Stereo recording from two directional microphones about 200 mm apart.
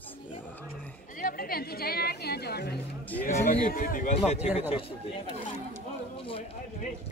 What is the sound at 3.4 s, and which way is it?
A man's voice, 40° left (ahead or behind).